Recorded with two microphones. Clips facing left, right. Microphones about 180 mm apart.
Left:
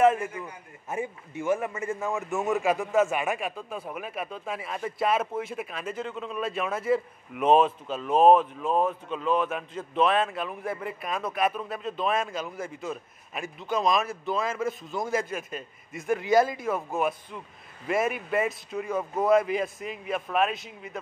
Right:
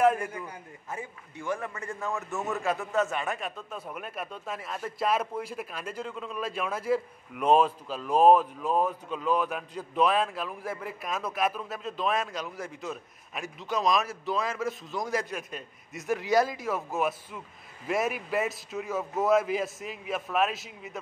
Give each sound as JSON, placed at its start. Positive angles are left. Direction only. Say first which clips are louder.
{"t": 0.0, "sound": "a man's voice", "louder": "left 2 dB", "side_deg": 5}
{"t": 0.8, "sound": "a man's voice", "louder": "left 7 dB", "side_deg": 25}